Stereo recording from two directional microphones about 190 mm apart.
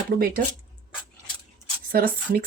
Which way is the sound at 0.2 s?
50° right (ahead or behind).